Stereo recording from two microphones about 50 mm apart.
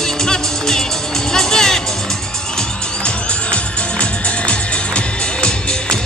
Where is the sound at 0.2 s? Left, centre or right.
Centre.